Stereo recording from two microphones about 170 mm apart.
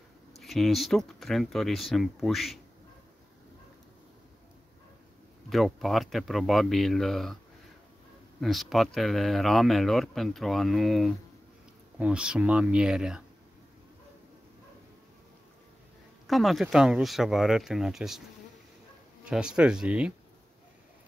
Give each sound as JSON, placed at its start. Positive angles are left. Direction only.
{"t": 0.4, "sound": "speech", "side_deg": 0}
{"t": 5.5, "sound": "speech", "side_deg": 0}
{"t": 8.4, "sound": "speech", "side_deg": 0}
{"t": 16.3, "sound": "speech", "side_deg": 0}
{"t": 19.2, "sound": "speech", "side_deg": -5}